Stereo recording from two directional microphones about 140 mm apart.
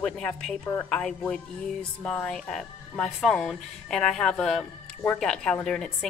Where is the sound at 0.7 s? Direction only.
10° left (ahead or behind).